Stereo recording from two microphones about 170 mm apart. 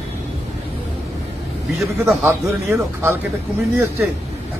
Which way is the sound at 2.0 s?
15° right (ahead or behind).